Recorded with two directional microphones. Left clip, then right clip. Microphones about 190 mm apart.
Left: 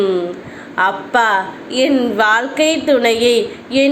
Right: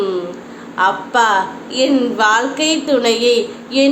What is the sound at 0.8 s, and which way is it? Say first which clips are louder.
A woman's voice: even; 15° left (ahead or behind).